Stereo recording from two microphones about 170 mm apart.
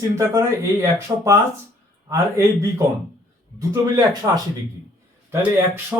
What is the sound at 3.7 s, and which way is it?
A man's voice, 20° right (ahead or behind).